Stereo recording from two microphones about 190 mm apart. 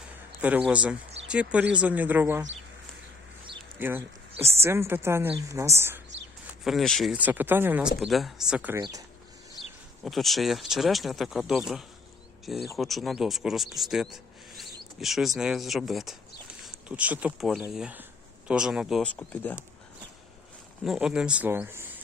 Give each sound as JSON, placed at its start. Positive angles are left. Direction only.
{"t": 0.4, "sound": "speech", "side_deg": -5}
{"t": 3.8, "sound": "speech", "side_deg": -10}
{"t": 6.7, "sound": "speech", "side_deg": 0}
{"t": 8.8, "sound": "speech", "side_deg": -20}
{"t": 10.0, "sound": "speech", "side_deg": 0}
{"t": 20.8, "sound": "speech", "side_deg": -5}